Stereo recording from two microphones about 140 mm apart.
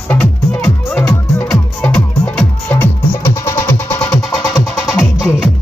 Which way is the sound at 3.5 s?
20° left (ahead or behind).